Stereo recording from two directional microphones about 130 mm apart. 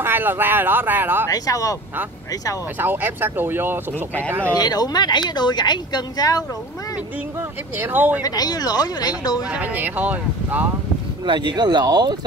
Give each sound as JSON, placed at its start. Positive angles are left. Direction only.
{"t": 0.0, "sound": "speech", "side_deg": -15}
{"t": 1.3, "sound": "speech", "side_deg": 25}
{"t": 2.8, "sound": "speech", "side_deg": -15}
{"t": 4.6, "sound": "speech", "side_deg": 30}
{"t": 7.8, "sound": "speech", "side_deg": -15}
{"t": 8.2, "sound": "speech", "side_deg": 30}
{"t": 9.5, "sound": "speech", "side_deg": -15}
{"t": 11.2, "sound": "speech", "side_deg": -35}